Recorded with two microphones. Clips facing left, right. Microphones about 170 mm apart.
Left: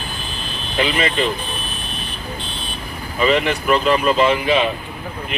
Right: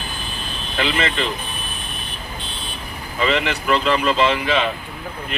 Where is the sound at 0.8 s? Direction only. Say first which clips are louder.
Left 3 dB; 20° left (ahead or behind).